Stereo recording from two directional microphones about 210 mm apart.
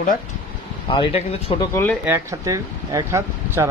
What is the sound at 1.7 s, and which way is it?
Speech, 10° left (ahead or behind).